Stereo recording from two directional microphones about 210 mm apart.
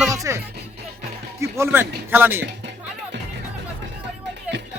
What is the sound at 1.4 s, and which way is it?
Speech, 15° right (ahead or behind).